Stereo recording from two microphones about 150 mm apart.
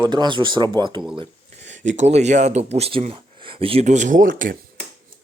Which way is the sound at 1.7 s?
55° right (ahead or behind).